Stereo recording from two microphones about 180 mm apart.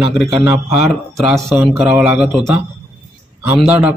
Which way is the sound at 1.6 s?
10° right (ahead or behind).